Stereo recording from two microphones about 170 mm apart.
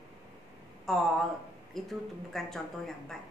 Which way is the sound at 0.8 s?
Centre (ahead or behind).